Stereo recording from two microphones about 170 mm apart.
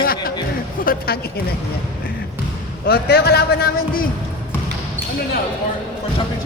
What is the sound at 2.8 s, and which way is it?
A man's voice, 70° left (ahead or behind).